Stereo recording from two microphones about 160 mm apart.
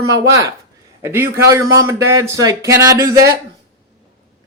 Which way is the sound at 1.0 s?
15° right (ahead or behind).